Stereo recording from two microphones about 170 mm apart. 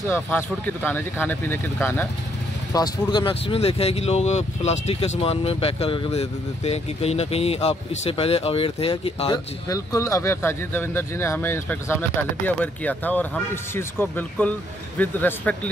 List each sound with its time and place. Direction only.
0.1 s speech: 10° left (ahead or behind)
2.7 s speech: 25° left (ahead or behind)
9.7 s speech: 20° left (ahead or behind)